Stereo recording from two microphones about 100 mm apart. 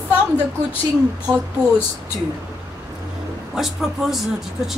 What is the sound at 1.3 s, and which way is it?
Speech, 25° right (ahead or behind).